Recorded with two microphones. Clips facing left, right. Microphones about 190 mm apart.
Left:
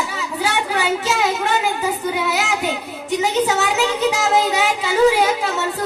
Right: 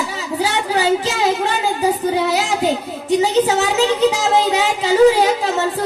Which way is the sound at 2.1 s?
35° right (ahead or behind).